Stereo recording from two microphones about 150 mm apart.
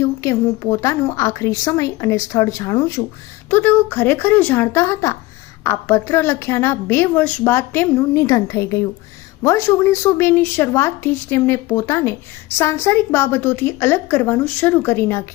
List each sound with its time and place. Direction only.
0.0 s a woman's voice: 20° left (ahead or behind)